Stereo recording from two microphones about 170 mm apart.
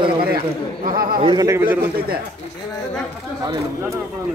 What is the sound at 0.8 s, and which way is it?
Speech, 55° right (ahead or behind).